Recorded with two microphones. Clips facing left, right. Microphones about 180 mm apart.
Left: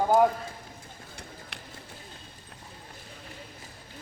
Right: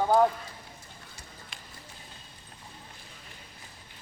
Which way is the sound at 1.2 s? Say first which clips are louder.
Left 5 dB; 65° left (ahead or behind).